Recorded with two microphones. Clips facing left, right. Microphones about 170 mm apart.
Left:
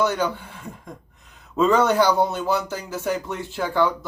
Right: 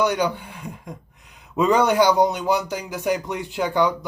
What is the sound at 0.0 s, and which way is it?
Speech, 15° right (ahead or behind).